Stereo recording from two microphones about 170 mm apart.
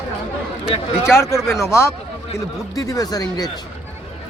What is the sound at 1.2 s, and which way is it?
Speech, 15° left (ahead or behind).